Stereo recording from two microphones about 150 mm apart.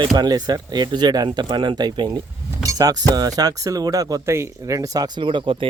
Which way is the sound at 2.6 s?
25° right (ahead or behind).